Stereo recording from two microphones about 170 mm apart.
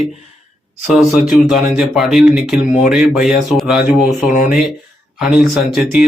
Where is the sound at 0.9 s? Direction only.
Centre (ahead or behind).